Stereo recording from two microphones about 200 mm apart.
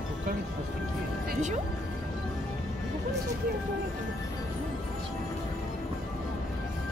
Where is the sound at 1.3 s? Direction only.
35° right (ahead or behind).